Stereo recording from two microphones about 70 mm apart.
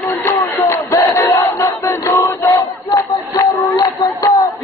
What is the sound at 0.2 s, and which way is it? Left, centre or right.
Battle cry, left.